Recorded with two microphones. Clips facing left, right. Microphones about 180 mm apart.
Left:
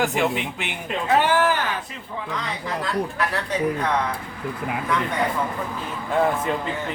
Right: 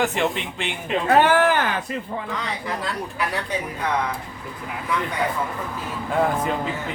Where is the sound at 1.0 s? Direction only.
55° right (ahead or behind).